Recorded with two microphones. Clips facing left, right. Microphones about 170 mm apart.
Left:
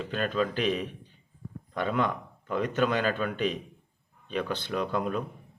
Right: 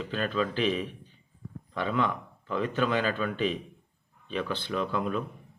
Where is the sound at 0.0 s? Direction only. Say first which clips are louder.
Left 1 dB; 45° left (ahead or behind).